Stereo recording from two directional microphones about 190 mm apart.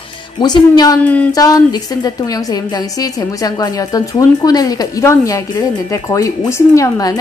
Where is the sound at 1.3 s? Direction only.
20° left (ahead or behind).